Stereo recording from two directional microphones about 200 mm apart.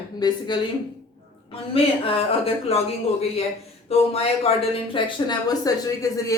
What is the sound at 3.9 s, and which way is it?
Speech, 30° left (ahead or behind).